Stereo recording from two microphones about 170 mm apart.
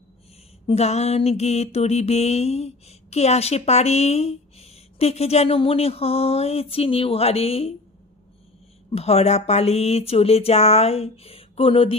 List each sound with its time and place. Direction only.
0.7 s mantra: 40° left (ahead or behind)
8.9 s mantra: 40° left (ahead or behind)